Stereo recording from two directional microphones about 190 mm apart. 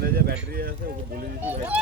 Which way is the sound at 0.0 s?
55° right (ahead or behind).